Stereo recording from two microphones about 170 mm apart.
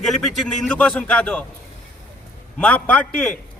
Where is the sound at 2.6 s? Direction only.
10° left (ahead or behind).